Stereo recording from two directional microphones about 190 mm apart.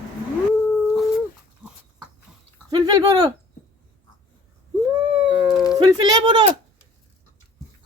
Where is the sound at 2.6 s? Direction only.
20° right (ahead or behind).